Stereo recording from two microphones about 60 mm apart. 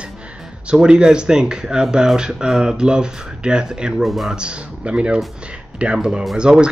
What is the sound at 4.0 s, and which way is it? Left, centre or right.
Speech, centre.